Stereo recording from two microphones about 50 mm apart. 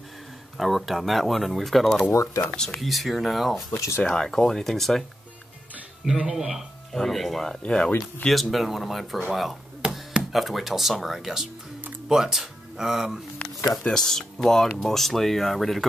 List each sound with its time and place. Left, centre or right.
0.6 s speech: centre
2.5 s speech: centre
2.8 s speech: centre
3.7 s speech: left
4.0 s speech: centre
6.0 s speech: centre
6.9 s speech: centre
7.6 s speech: centre
8.3 s speech: centre
9.8 s chopping: centre
10.3 s speech: centre
13.9 s speech: centre